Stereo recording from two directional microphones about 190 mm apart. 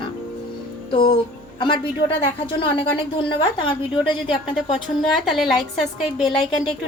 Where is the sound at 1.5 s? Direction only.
25° left (ahead or behind).